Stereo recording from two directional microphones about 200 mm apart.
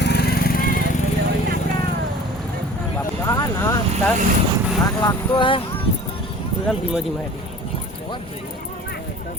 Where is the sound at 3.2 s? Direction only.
15° left (ahead or behind).